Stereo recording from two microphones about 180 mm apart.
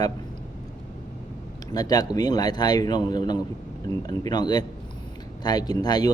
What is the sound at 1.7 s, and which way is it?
Speech, 20° left (ahead or behind).